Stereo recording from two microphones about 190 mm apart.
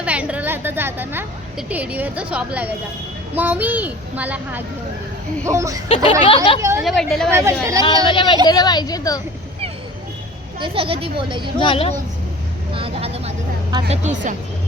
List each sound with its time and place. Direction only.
0.0 s a woman's voice: 5° right (ahead or behind)
5.9 s a woman's voice: 25° left (ahead or behind)
6.6 s a child's voice: 15° right (ahead or behind)
6.8 s a woman's voice: centre (ahead or behind)
7.3 s a child's voice: 15° right (ahead or behind)
8.0 s a woman's voice: 25° left (ahead or behind)
10.6 s a woman's voice: 30° right (ahead or behind)
11.6 s a woman's voice: 30° left (ahead or behind)
12.7 s vehicle: 30° right (ahead or behind)
13.9 s a woman's voice: 35° right (ahead or behind)